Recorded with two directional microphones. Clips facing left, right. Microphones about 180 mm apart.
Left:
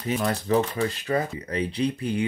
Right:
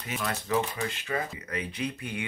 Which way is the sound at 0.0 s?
35° left (ahead or behind).